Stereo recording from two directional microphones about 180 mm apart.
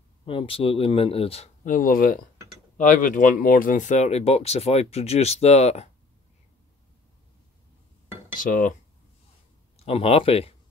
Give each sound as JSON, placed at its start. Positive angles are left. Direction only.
{"t": 0.2, "sound": "speech", "side_deg": 30}
{"t": 8.4, "sound": "speech", "side_deg": 50}
{"t": 9.8, "sound": "speech", "side_deg": 35}